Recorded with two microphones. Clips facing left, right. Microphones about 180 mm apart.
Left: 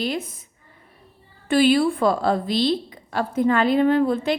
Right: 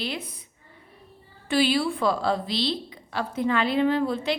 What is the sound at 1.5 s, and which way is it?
A woman's voice, 50° left (ahead or behind).